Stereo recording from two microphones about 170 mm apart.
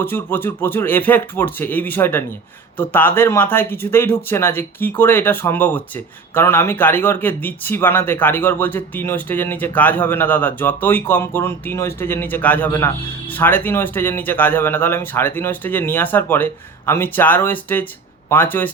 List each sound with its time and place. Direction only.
0.0 s speech: 10° left (ahead or behind)